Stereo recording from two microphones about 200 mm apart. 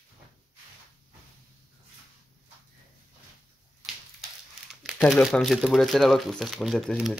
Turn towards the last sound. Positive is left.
turn(degrees=0)  # may be behind; listen again after turning